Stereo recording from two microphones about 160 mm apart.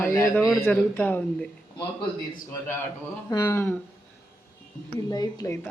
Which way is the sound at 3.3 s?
15° left (ahead or behind).